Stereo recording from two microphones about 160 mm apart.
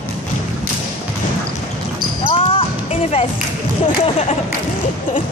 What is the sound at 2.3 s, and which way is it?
Basketball bounce, 35° left (ahead or behind).